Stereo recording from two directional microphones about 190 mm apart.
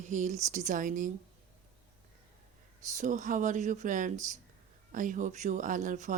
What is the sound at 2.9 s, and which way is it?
Speech, 40° right (ahead or behind).